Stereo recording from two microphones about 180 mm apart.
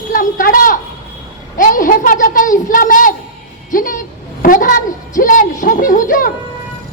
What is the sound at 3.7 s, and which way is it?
A woman's voice, 50° left (ahead or behind).